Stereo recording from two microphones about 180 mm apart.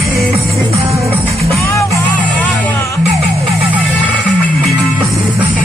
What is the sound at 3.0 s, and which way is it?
Music, 35° right (ahead or behind).